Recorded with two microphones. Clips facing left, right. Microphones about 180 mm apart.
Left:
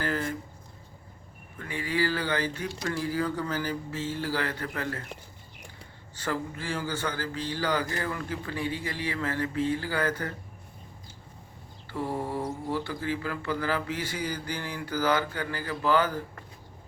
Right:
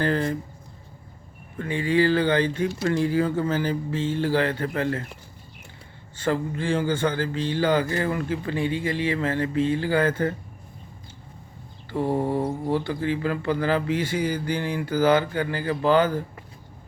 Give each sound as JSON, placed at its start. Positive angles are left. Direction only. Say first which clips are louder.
{"t": 0.0, "sound": "speech", "louder": "right 7 dB", "side_deg": -30}
{"t": 1.5, "sound": "speech", "louder": "right 8 dB", "side_deg": -25}
{"t": 6.2, "sound": "speech", "louder": "right 7 dB", "side_deg": -25}
{"t": 11.9, "sound": "speech", "louder": "right 8 dB", "side_deg": -25}